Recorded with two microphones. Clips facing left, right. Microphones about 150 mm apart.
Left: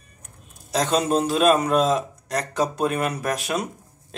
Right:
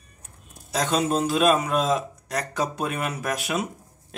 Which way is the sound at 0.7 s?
Centre (ahead or behind).